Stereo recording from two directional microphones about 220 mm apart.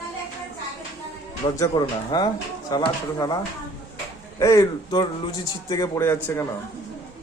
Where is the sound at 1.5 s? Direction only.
15° left (ahead or behind).